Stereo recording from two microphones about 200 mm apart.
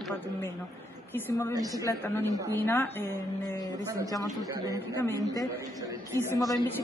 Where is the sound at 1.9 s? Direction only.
10° left (ahead or behind).